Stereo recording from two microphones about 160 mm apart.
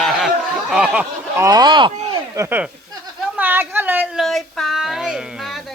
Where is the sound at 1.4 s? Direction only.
25° right (ahead or behind).